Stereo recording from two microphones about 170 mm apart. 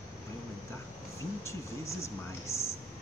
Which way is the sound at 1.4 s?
15° left (ahead or behind).